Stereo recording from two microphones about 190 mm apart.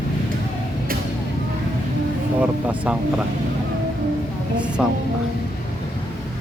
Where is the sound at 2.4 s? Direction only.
5° right (ahead or behind).